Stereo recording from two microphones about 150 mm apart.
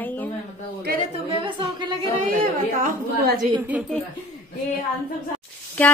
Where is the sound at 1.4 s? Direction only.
35° right (ahead or behind).